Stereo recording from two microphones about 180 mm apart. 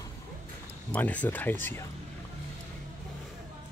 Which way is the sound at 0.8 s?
10° left (ahead or behind).